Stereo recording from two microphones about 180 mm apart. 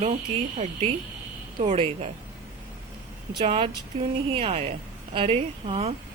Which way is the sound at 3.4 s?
30° right (ahead or behind).